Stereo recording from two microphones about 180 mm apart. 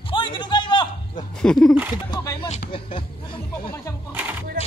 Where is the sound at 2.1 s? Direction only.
20° left (ahead or behind).